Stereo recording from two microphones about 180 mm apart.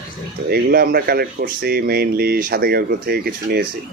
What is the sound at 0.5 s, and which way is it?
Speech, 55° right (ahead or behind).